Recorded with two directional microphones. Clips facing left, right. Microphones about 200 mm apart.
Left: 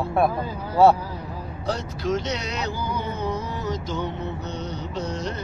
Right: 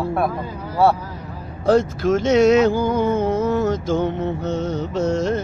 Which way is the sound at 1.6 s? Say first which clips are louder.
Right 11 dB; 50° right (ahead or behind).